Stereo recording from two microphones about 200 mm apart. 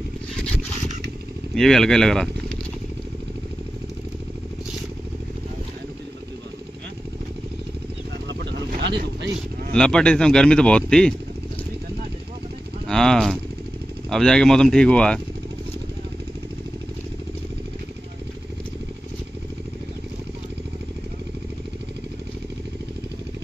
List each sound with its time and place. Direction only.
1.5 s speech: centre (ahead or behind)
8.3 s vehicle: 60° right (ahead or behind)
9.8 s speech: 5° left (ahead or behind)
12.8 s a sound: 5° left (ahead or behind)
14.0 s speech: 5° left (ahead or behind)